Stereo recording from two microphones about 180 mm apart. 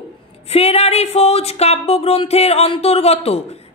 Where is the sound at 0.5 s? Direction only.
35° left (ahead or behind).